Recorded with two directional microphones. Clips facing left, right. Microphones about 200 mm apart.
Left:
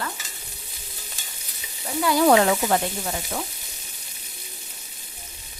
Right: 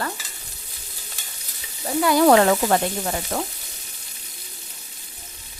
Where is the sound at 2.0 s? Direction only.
55° right (ahead or behind).